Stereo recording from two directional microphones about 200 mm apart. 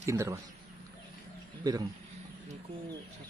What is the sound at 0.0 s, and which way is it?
Speech, 15° right (ahead or behind).